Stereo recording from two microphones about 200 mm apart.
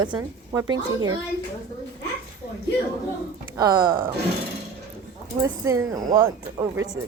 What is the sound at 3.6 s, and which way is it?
Speech, 20° right (ahead or behind).